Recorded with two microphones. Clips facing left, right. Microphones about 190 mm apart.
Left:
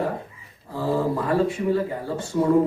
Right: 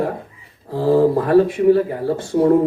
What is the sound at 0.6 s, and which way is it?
Speech, 60° right (ahead or behind).